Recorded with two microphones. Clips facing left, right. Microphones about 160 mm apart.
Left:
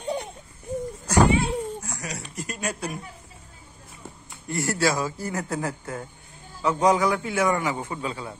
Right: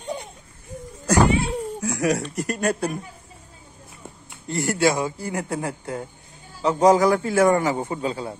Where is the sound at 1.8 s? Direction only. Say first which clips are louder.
Right 13 dB; 90° right; by 2.9 s 50° right (ahead or behind).